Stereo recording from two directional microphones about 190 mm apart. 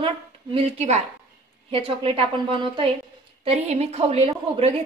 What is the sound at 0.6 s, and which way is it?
A woman's voice, 35° right (ahead or behind).